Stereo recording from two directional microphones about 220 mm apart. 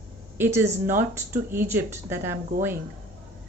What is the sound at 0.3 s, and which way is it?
Speech, 10° right (ahead or behind).